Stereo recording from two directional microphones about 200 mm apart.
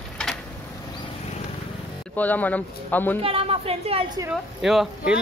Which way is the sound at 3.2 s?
30° right (ahead or behind).